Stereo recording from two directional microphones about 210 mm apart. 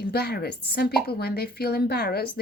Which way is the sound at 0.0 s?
50° left (ahead or behind).